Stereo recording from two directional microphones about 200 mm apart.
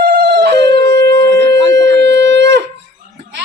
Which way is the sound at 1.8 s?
60° right (ahead or behind).